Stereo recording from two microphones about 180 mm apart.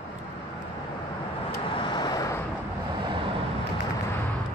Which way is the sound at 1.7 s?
25° left (ahead or behind).